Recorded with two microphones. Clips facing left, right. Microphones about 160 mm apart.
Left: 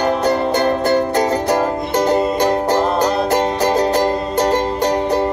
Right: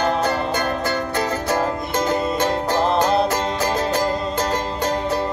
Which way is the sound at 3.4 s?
35° left (ahead or behind).